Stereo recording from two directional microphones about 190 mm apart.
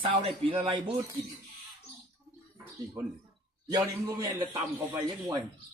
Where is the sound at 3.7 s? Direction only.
20° right (ahead or behind).